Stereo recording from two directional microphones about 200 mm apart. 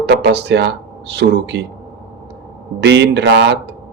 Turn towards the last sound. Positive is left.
turn(degrees=-65)  # may be behind; listen again after turning